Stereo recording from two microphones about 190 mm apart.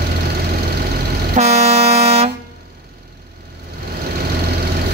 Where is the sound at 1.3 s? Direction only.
35° right (ahead or behind).